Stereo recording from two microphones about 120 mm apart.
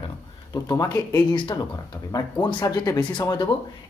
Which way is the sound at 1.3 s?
45° left (ahead or behind).